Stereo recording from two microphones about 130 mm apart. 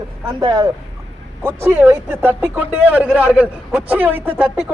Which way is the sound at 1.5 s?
15° right (ahead or behind).